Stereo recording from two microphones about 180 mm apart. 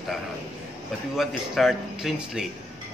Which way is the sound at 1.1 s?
Centre (ahead or behind).